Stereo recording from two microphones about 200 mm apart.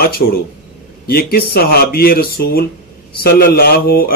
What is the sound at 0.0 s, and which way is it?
Speech, 50° left (ahead or behind).